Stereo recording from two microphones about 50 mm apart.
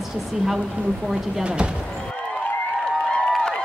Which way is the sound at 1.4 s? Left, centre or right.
Right.